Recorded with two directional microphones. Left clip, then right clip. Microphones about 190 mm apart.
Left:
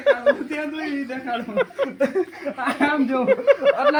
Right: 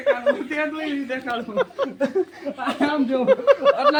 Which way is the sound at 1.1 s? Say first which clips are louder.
Right 1 dB; 50° left (ahead or behind).